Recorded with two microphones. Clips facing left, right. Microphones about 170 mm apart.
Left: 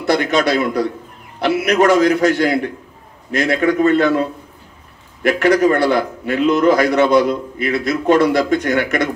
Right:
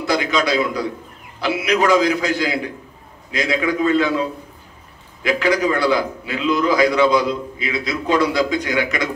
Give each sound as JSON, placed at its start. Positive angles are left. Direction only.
{"t": 0.0, "sound": "a man's voice", "side_deg": 60}